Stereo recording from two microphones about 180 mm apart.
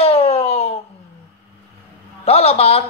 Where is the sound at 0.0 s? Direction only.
35° left (ahead or behind).